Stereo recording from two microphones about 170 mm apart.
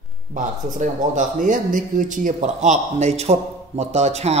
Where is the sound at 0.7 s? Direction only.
50° right (ahead or behind).